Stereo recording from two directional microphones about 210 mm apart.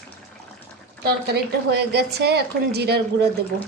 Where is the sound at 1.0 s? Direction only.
50° right (ahead or behind).